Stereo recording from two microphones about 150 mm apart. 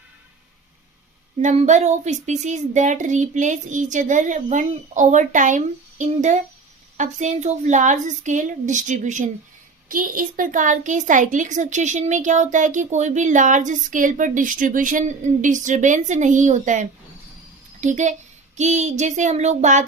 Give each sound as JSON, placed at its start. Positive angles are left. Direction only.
{"t": 1.4, "sound": "a woman's voice", "side_deg": -55}
{"t": 9.9, "sound": "a woman's voice", "side_deg": -70}
{"t": 18.5, "sound": "child singing", "side_deg": -50}